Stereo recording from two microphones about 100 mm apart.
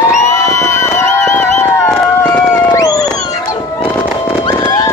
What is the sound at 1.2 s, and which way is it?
Music, 25° left (ahead or behind).